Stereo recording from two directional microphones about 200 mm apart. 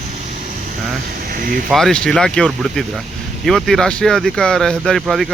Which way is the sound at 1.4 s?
45° right (ahead or behind).